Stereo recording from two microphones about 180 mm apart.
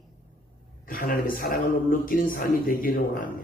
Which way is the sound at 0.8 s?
50° left (ahead or behind).